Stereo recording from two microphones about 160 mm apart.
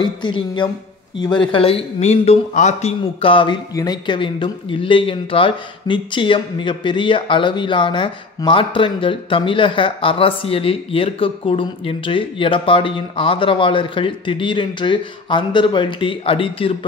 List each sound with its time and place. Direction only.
0.0 s a woman's voice: 30° left (ahead or behind); by 2.9 s 45° left (ahead or behind)
3.2 s a man's voice: 35° left (ahead or behind)